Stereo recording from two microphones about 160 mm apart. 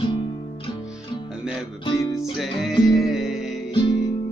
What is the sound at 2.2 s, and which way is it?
Music, centre (ahead or behind).